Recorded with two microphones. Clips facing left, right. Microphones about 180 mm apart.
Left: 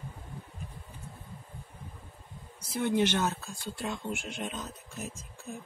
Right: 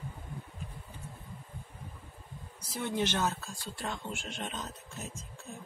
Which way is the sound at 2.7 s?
15° left (ahead or behind).